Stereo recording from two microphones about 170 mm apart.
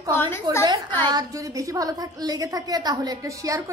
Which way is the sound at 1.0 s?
20° right (ahead or behind).